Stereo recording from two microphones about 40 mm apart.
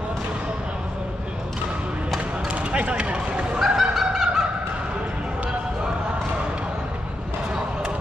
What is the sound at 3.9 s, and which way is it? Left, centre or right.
Fowl, centre.